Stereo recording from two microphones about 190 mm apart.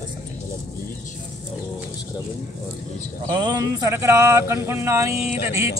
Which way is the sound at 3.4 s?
20° right (ahead or behind).